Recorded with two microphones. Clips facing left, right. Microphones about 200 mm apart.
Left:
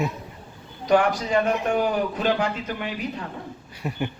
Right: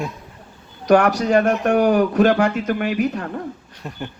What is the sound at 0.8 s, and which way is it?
Speech, 75° right (ahead or behind).